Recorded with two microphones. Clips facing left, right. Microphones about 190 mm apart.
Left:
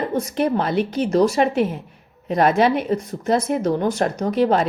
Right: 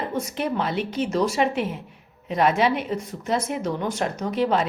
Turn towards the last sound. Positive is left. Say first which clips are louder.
# left 4 dB
turn(degrees=45)  # may be behind; listen again after turning